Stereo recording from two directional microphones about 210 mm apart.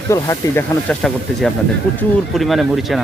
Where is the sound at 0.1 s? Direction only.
10° left (ahead or behind).